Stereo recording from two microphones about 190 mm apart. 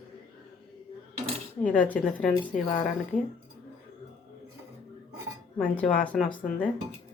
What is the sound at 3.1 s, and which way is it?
Speech, 40° left (ahead or behind).